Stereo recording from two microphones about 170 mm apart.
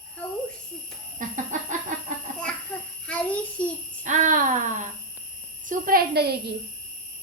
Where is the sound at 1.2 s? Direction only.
50° right (ahead or behind).